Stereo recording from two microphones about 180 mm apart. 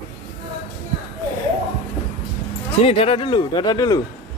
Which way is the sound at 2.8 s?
30° left (ahead or behind).